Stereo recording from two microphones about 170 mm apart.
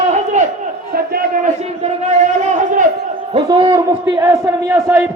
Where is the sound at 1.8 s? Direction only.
45° right (ahead or behind).